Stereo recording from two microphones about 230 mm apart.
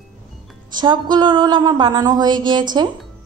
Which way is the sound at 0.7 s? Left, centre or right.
Centre.